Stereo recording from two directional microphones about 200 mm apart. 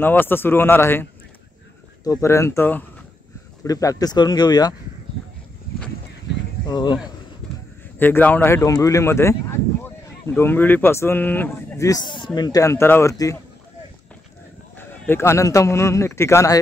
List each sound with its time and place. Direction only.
0.0 s a man's voice: 10° left (ahead or behind)
2.1 s a man's voice: 15° left (ahead or behind)
6.7 s speech: 20° left (ahead or behind)
7.4 s a sound: 5° left (ahead or behind)
8.0 s a man's voice: 10° left (ahead or behind)
14.8 s a man's voice: 10° left (ahead or behind)